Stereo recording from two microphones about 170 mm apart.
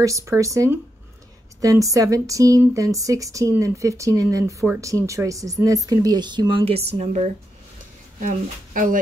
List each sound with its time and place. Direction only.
0.0 s a woman's voice: 20° right (ahead or behind); by 7.2 s 40° right (ahead or behind)
8.2 s speech: 50° right (ahead or behind)